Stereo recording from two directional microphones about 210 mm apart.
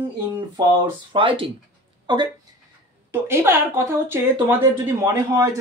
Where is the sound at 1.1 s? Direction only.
25° right (ahead or behind).